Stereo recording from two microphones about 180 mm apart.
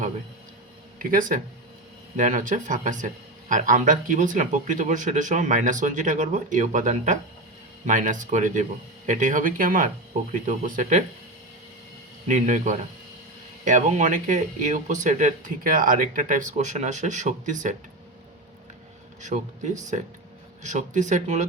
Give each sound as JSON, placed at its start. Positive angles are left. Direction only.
{"t": 0.9, "sound": "speech", "side_deg": -50}
{"t": 12.3, "sound": "speech", "side_deg": -45}
{"t": 19.2, "sound": "speech", "side_deg": -40}